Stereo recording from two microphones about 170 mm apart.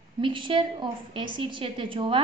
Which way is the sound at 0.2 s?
30° right (ahead or behind).